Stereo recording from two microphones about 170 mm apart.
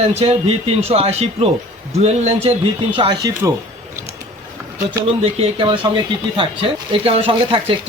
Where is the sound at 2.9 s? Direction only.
25° right (ahead or behind).